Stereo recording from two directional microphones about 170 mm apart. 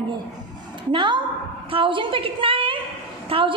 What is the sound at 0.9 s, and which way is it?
A woman's voice, 25° right (ahead or behind).